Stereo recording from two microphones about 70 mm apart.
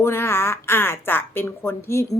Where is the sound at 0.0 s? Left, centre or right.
Left.